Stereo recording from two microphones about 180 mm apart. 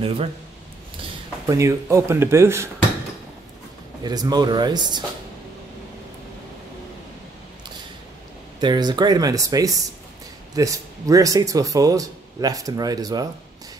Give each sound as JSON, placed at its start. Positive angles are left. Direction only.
{"t": 0.0, "sound": "speech", "side_deg": -30}
{"t": 1.5, "sound": "speech", "side_deg": -15}
{"t": 4.0, "sound": "speech", "side_deg": -20}
{"t": 8.5, "sound": "speech", "side_deg": -25}